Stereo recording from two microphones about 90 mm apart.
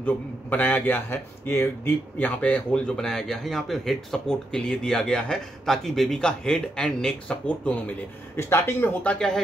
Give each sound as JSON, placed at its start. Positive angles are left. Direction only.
{"t": 0.0, "sound": "a man's voice", "side_deg": 20}
{"t": 8.4, "sound": "speech", "side_deg": 30}
{"t": 9.0, "sound": "a man's voice", "side_deg": 10}